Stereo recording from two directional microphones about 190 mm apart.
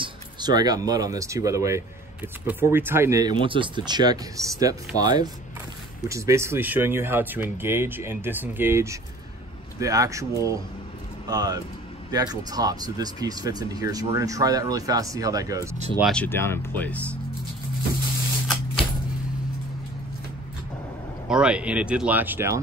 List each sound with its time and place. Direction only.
0.0 s speech: 20° right (ahead or behind)
16.0 s speech: 5° left (ahead or behind)
21.3 s speech: 5° right (ahead or behind)